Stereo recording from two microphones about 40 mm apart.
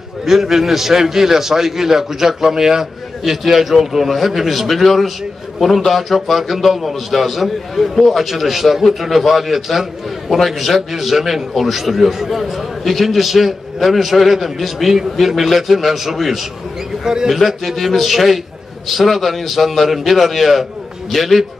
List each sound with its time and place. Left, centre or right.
0.2 s a man's voice: centre
17.0 s a man's voice: centre
17.3 s a man's voice: centre